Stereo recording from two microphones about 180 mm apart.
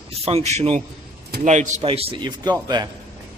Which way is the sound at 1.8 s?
30° right (ahead or behind).